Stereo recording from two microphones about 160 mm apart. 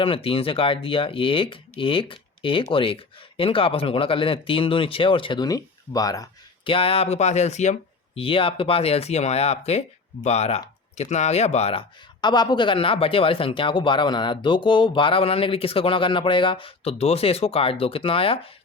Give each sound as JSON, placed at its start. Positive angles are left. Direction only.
{"t": 0.0, "sound": "speech", "side_deg": 35}
{"t": 6.7, "sound": "speech", "side_deg": 35}